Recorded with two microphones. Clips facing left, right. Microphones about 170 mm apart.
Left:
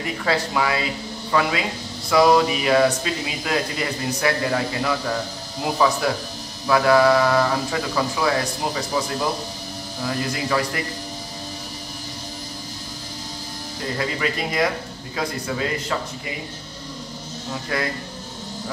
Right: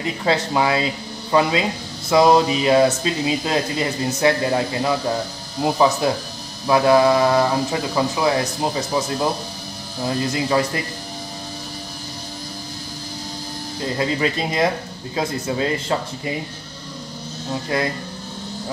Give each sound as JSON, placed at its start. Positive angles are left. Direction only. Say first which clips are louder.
{"t": 0.0, "sound": "speech", "louder": "right 2 dB", "side_deg": -25}
{"t": 13.9, "sound": "speech", "louder": "right 4 dB", "side_deg": -25}
{"t": 17.7, "sound": "speech", "louder": "right 3 dB", "side_deg": -25}